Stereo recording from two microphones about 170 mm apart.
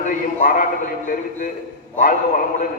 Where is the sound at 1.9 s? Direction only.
50° left (ahead or behind).